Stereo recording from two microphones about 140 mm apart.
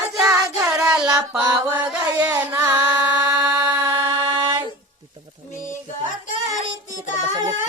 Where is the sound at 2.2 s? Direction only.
15° right (ahead or behind).